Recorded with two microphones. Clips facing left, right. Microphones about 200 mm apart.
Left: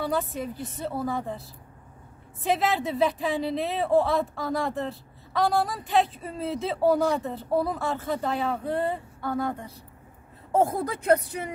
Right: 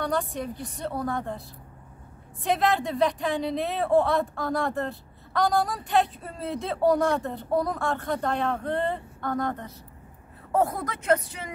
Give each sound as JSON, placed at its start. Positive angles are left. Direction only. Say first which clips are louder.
{"t": 0.0, "sound": "speech", "louder": "even", "side_deg": 5}
{"t": 2.4, "sound": "speech", "louder": "right 1 dB", "side_deg": 0}
{"t": 10.5, "sound": "speech", "louder": "left 2 dB", "side_deg": 25}